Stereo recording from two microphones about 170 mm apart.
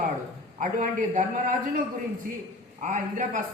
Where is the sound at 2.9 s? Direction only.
50° right (ahead or behind).